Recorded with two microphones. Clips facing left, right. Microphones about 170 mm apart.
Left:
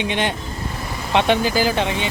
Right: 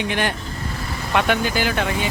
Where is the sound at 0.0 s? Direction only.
20° left (ahead or behind).